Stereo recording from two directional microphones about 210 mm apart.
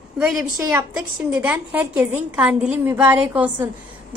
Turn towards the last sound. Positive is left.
turn(degrees=-10)  # may be behind; listen again after turning